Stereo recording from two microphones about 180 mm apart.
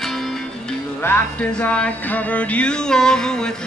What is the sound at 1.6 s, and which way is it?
Music, 5° left (ahead or behind).